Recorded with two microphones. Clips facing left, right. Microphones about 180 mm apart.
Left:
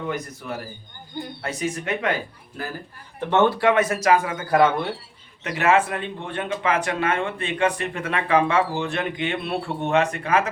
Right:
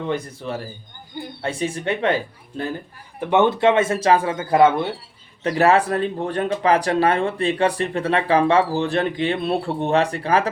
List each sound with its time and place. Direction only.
0.1 s speech: 30° right (ahead or behind)
3.2 s speech: 15° right (ahead or behind); by 10.5 s 35° right (ahead or behind)